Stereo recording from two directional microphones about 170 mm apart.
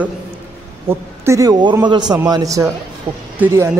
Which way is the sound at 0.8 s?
15° right (ahead or behind).